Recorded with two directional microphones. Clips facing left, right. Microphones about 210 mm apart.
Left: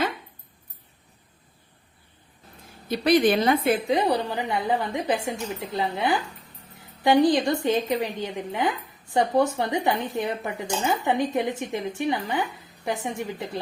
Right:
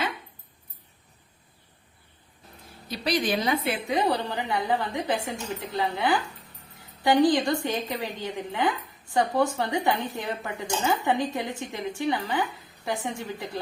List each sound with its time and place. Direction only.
2.9 s speech: 55° left (ahead or behind)
3.8 s speech: 25° left (ahead or behind)